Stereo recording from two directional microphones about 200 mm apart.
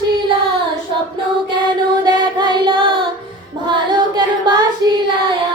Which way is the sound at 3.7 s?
20° right (ahead or behind).